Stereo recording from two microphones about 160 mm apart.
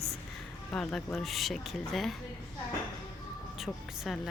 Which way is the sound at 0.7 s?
5° left (ahead or behind).